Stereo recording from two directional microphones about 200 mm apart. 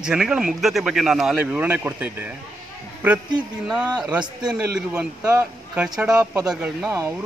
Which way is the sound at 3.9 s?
5° right (ahead or behind).